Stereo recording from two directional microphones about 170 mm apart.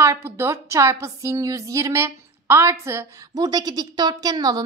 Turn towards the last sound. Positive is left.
turn(degrees=-20)  # may be behind; listen again after turning